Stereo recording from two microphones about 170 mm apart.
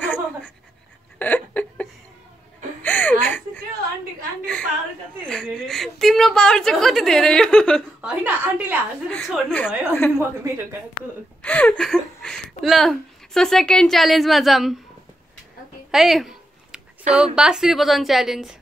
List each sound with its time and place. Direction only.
0.0 s pant: 5° left (ahead or behind)
1.2 s a sound: 10° left (ahead or behind)
5.2 s a sound: 5° left (ahead or behind)
8.0 s a woman's voice: 5° right (ahead or behind)
9.1 s speech: 5° left (ahead or behind)
10.1 s a woman's voice: 15° right (ahead or behind)
11.4 s speech: 10° left (ahead or behind)
15.9 s a sound: centre (ahead or behind)
17.1 s a woman's voice: 5° right (ahead or behind)